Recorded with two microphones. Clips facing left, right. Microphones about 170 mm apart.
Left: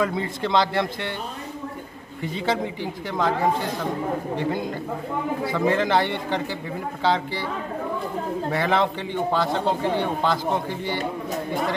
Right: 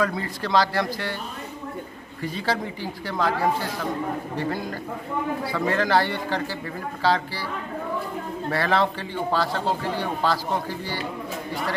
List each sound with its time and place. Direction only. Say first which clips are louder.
0.0 s a man's voice: left 1 dB; 20° left (ahead or behind)
2.2 s a man's voice: left 2 dB; 20° left (ahead or behind)
8.5 s a man's voice: even; 20° left (ahead or behind)